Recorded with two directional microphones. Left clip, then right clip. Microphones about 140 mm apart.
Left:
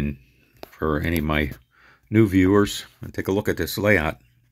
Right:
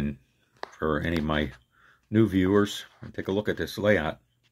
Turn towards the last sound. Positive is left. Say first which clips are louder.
# left 4 dB
turn(degrees=25)  # may be behind; listen again after turning